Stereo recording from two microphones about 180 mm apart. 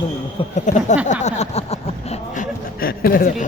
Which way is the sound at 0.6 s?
45° left (ahead or behind).